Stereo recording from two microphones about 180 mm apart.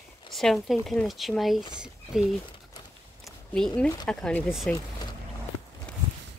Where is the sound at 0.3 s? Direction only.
Centre (ahead or behind).